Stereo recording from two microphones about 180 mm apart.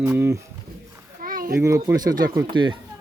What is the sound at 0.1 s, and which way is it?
Speech, 15° right (ahead or behind).